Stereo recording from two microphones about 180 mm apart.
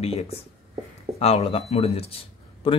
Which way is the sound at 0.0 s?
35° left (ahead or behind).